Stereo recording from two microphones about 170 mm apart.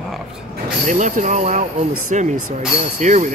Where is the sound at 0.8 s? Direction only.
45° right (ahead or behind).